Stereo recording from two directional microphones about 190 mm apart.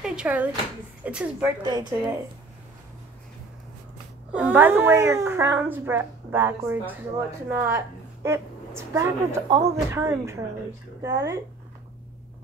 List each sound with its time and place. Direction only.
0.0 s a woman's voice: 5° right (ahead or behind)
1.6 s speech: 20° right (ahead or behind)
4.3 s a woman's voice: 10° right (ahead or behind)